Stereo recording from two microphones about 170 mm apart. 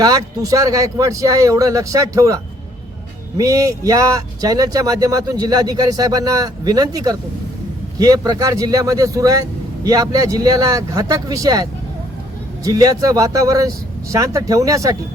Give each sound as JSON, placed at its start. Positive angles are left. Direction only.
{"t": 0.0, "sound": "speech", "side_deg": -20}